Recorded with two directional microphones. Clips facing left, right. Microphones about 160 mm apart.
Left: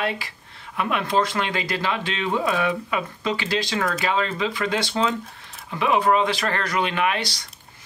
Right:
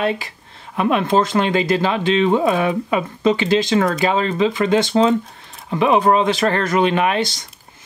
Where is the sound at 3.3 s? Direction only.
20° right (ahead or behind).